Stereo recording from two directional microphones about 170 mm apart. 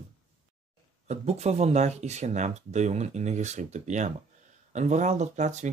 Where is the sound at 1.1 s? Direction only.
40° right (ahead or behind).